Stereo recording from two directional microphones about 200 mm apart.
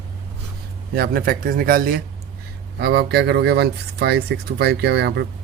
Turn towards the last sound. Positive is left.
turn(degrees=-55)  # may be behind; listen again after turning